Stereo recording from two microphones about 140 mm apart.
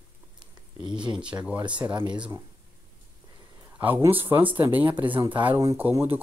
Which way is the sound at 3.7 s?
15° right (ahead or behind).